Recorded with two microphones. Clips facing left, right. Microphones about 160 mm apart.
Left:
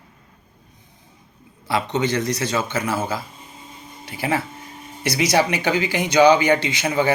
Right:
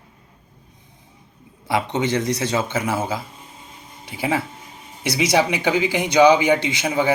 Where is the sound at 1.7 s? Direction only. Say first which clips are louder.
Even; 20° right (ahead or behind).